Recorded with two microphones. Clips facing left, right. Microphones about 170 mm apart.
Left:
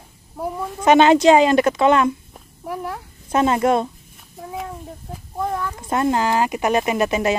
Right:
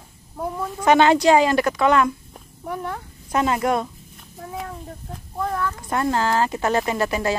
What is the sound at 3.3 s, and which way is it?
Speech, 25° left (ahead or behind).